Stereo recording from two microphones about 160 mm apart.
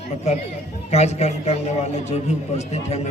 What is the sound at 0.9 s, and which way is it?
A man's voice, 45° left (ahead or behind).